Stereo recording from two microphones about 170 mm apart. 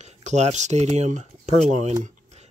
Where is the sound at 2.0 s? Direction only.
40° right (ahead or behind).